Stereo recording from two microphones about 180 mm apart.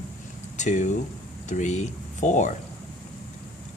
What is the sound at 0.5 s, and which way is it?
Speech, 40° left (ahead or behind).